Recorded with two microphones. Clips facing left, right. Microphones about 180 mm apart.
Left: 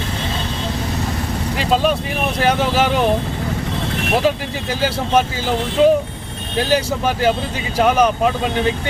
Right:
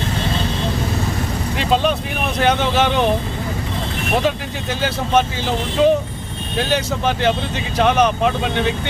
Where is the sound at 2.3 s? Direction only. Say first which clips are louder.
Even; 5° left (ahead or behind).